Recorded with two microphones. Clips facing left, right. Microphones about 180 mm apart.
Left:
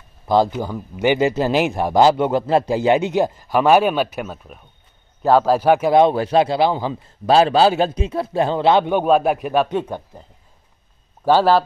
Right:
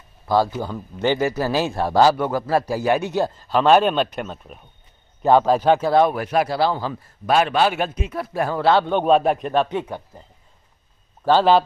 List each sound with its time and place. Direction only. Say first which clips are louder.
0.3 s a man's voice: left 3 dB; 20° left (ahead or behind)
9.0 s a man's voice: left 1 dB; 5° left (ahead or behind)
9.7 s speech: left 3 dB; 10° right (ahead or behind)
11.2 s speech: left 1 dB; 10° left (ahead or behind)